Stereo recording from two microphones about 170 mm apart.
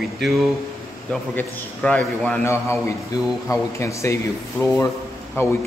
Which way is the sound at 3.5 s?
15° left (ahead or behind).